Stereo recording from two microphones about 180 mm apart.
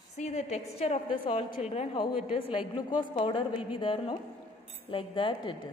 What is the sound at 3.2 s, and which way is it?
A woman's voice, 30° left (ahead or behind).